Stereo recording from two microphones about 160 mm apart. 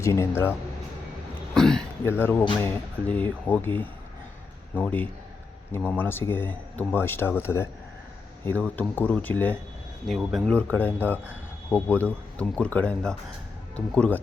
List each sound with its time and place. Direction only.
0.0 s speech: 15° left (ahead or behind)
1.5 s speech: 5° left (ahead or behind)
10.1 s speech: centre (ahead or behind)